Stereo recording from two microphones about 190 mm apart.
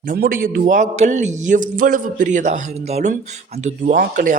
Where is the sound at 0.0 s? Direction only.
45° right (ahead or behind).